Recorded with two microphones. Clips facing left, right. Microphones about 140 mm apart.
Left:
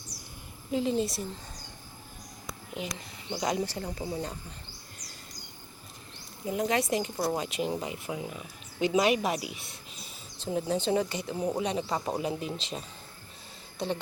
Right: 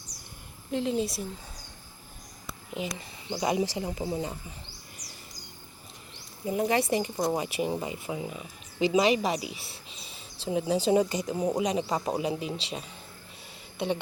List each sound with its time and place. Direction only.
0.7 s speech: centre (ahead or behind)
2.7 s speech: centre (ahead or behind)
6.4 s speech: centre (ahead or behind)
10.9 s speech: 20° right (ahead or behind)